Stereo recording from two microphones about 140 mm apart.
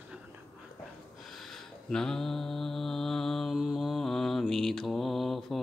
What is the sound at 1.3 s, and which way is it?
Mantra, centre (ahead or behind).